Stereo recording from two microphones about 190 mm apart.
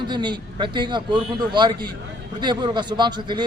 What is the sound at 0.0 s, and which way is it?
A man's voice, 25° right (ahead or behind).